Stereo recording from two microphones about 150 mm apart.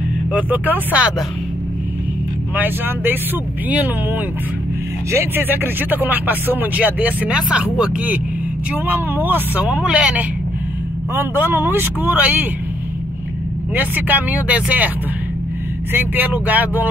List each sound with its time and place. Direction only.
0.3 s speech: 10° right (ahead or behind)
2.5 s speech: 10° right (ahead or behind)
5.1 s speech: 15° right (ahead or behind)
13.7 s speech: 10° right (ahead or behind)
15.9 s speech: 15° right (ahead or behind)